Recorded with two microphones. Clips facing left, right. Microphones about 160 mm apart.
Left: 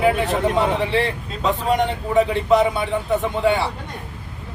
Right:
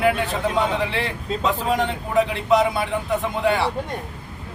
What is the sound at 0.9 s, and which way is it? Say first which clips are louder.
A man's voice: left 4 dB; centre (ahead or behind).